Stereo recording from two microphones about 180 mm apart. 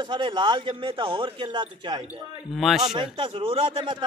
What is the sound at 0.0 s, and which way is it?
A man's voice, 25° right (ahead or behind).